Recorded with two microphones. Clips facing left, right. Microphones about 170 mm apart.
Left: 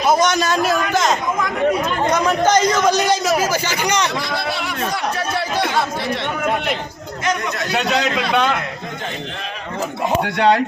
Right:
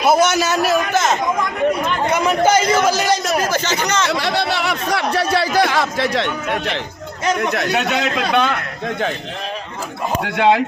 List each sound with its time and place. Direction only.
0.0 s a man's voice: 10° right (ahead or behind); by 4.1 s 15° left (ahead or behind)
4.2 s speech: 80° right
7.7 s a man's voice: centre (ahead or behind)
10.2 s a man's voice: 5° right (ahead or behind)